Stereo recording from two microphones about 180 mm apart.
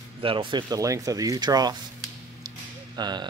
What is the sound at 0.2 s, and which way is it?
Speech, 30° right (ahead or behind).